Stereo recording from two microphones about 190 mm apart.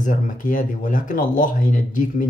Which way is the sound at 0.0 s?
45° left (ahead or behind).